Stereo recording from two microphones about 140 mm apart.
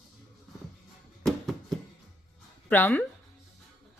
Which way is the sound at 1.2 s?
Centre (ahead or behind).